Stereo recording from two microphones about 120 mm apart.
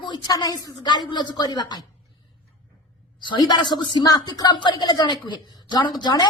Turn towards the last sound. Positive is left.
turn(degrees=35)  # may be behind; listen again after turning